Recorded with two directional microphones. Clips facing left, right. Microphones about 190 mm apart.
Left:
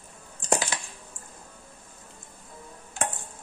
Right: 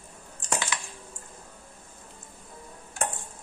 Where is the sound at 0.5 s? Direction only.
30° left (ahead or behind).